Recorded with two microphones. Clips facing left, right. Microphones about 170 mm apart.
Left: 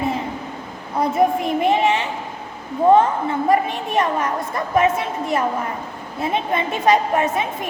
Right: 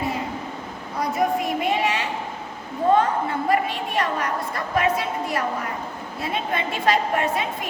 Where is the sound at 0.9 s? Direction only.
25° left (ahead or behind).